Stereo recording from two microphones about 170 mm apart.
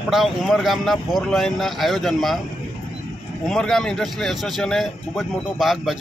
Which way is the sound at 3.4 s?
5° left (ahead or behind).